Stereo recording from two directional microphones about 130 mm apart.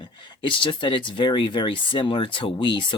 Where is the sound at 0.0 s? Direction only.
40° left (ahead or behind).